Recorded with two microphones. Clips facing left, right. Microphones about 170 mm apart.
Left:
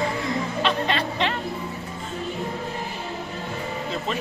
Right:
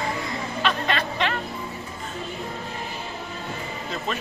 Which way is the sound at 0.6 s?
25° left (ahead or behind).